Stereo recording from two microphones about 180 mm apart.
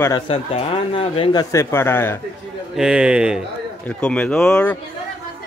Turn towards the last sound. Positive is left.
turn(degrees=5)  # may be behind; listen again after turning